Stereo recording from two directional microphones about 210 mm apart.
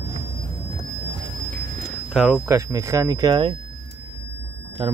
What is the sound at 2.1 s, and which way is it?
Speech, 5° right (ahead or behind).